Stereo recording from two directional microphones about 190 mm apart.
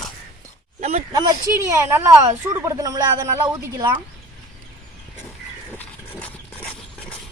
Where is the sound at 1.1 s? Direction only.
15° right (ahead or behind).